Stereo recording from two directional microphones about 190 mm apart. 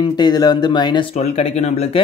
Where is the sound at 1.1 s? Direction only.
35° left (ahead or behind).